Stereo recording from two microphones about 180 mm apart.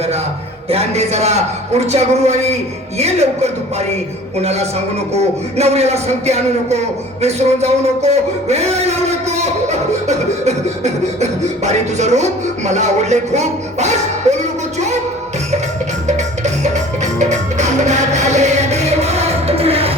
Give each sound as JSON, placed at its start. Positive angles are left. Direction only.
{"t": 0.7, "sound": "speech", "side_deg": -35}
{"t": 16.0, "sound": "music", "side_deg": -40}